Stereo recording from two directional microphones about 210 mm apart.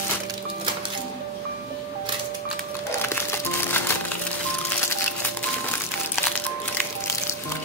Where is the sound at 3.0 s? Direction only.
10° left (ahead or behind).